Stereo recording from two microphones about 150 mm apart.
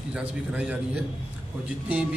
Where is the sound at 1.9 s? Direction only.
5° right (ahead or behind).